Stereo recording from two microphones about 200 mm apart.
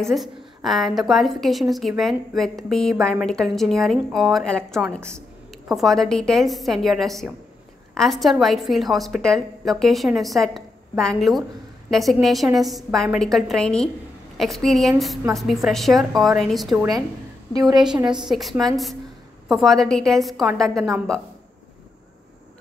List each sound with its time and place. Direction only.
0.0 s a woman's voice: centre (ahead or behind)
17.5 s a woman's voice: 20° right (ahead or behind)
17.8 s a woman's voice: 5° right (ahead or behind)